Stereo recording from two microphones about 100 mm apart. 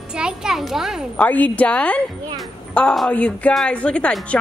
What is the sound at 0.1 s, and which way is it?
Speech, 10° right (ahead or behind).